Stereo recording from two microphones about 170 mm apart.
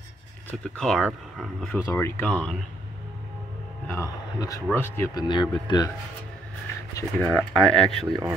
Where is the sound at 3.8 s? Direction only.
15° left (ahead or behind).